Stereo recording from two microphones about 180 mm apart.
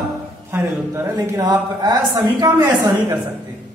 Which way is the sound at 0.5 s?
15° right (ahead or behind).